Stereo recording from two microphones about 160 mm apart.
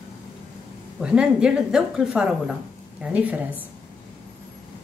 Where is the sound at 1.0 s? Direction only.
5° right (ahead or behind).